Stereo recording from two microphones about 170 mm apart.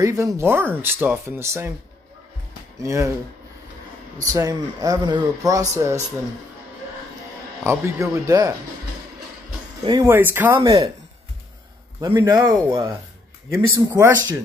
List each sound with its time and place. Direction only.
0.0 s speech: 20° right (ahead or behind)
2.8 s speech: 15° right (ahead or behind)
4.3 s speech: 20° right (ahead or behind)
7.6 s speech: 15° right (ahead or behind)
9.8 s speech: 20° right (ahead or behind)
10.1 s speech: 10° right (ahead or behind)
12.0 s speech: 20° right (ahead or behind)